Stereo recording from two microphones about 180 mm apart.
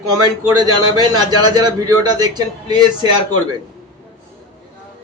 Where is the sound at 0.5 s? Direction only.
20° right (ahead or behind).